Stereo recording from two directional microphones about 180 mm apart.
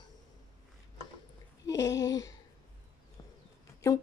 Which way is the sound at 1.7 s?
15° left (ahead or behind).